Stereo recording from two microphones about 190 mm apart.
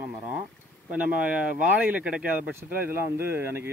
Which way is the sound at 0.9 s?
5° right (ahead or behind).